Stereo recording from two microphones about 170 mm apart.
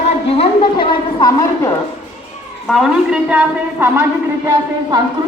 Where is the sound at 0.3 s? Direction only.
35° left (ahead or behind).